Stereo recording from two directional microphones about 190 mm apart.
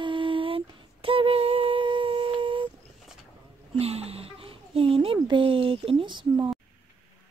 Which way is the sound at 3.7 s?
30° right (ahead or behind).